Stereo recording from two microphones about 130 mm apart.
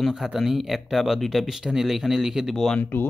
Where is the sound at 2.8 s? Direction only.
15° left (ahead or behind).